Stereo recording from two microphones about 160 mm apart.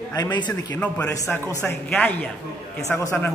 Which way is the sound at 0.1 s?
25° left (ahead or behind).